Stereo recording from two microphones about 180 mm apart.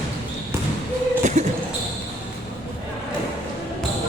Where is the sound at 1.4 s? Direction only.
40° right (ahead or behind).